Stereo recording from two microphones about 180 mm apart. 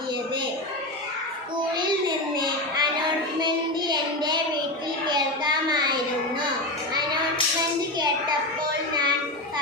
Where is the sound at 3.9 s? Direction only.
25° right (ahead or behind).